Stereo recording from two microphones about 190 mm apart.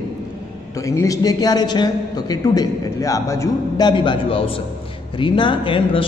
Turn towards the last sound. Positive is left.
turn(degrees=25)  # may be behind; listen again after turning